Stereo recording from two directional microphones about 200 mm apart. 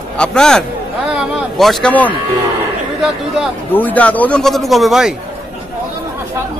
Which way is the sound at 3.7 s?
10° left (ahead or behind).